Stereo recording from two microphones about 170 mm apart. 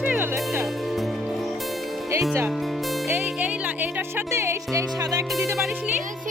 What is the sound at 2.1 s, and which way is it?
Music, 15° right (ahead or behind).